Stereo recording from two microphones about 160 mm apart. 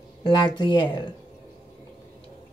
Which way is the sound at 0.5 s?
30° left (ahead or behind).